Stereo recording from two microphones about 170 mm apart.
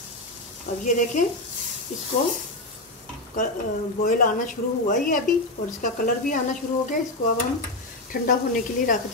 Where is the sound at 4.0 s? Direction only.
50° left (ahead or behind).